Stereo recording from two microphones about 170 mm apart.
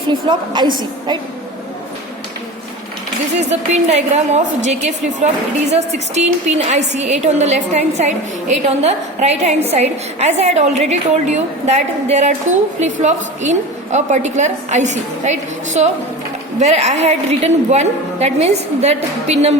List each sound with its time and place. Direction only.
0.1 s a woman's voice: 25° right (ahead or behind)
3.5 s a woman's voice: 40° right (ahead or behind)